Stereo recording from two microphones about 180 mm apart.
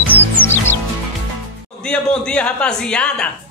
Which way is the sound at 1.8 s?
5° left (ahead or behind).